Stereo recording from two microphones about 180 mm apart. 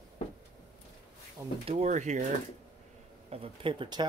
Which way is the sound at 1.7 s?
40° right (ahead or behind).